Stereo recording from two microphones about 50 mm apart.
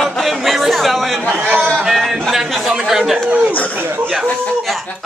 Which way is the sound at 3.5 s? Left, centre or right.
Left.